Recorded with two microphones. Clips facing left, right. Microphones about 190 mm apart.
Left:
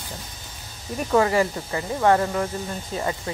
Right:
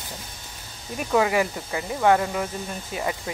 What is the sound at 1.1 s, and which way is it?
Speech, 10° right (ahead or behind).